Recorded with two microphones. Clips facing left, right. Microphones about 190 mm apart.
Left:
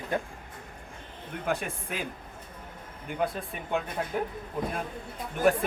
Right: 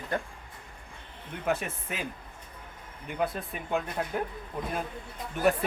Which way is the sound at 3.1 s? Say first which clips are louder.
Even; centre (ahead or behind).